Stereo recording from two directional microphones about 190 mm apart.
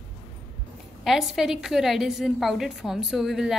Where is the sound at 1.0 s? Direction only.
Centre (ahead or behind).